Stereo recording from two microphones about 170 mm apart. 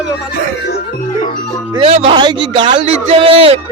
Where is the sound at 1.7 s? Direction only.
35° right (ahead or behind).